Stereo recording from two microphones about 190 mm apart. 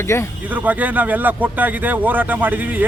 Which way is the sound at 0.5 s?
10° right (ahead or behind).